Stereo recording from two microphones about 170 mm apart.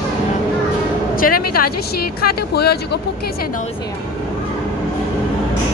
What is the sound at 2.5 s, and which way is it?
Speech, 70° left (ahead or behind).